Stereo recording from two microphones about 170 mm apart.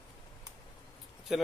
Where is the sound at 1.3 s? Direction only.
5° right (ahead or behind).